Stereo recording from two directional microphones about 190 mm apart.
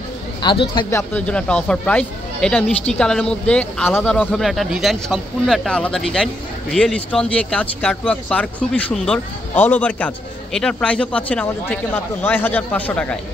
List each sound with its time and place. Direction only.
0.4 s speech: 25° left (ahead or behind)
0.8 s speech: 10° left (ahead or behind)